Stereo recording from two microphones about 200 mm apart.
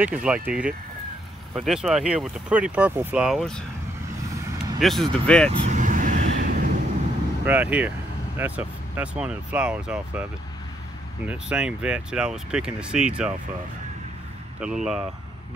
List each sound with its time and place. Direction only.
0.0 s speech: 5° right (ahead or behind)
4.7 s speech: centre (ahead or behind)
5.7 s vehicle: 40° right (ahead or behind)
7.4 s speech: 10° right (ahead or behind)
11.2 s speech: 5° right (ahead or behind)
14.6 s speech: 5° right (ahead or behind)